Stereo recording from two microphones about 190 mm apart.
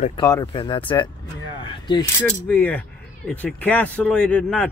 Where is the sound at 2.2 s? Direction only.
10° left (ahead or behind).